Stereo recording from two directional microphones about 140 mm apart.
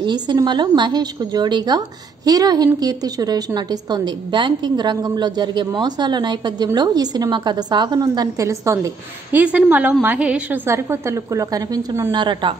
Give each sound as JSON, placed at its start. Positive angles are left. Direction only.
{"t": 0.0, "sound": "a woman's voice", "side_deg": -30}
{"t": 9.4, "sound": "a woman's voice", "side_deg": -10}
{"t": 10.7, "sound": "a woman's voice", "side_deg": -20}
{"t": 12.1, "sound": "a woman's voice", "side_deg": -35}